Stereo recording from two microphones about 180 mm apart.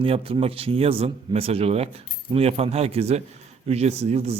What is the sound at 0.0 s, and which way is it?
A man's voice, 30° right (ahead or behind).